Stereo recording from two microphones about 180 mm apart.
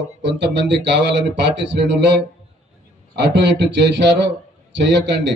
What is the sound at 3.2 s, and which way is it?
A man's voice, 75° right (ahead or behind).